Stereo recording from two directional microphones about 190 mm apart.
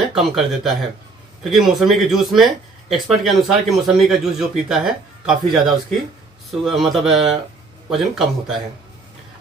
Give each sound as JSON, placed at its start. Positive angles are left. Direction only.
{"t": 0.1, "sound": "speech", "side_deg": 0}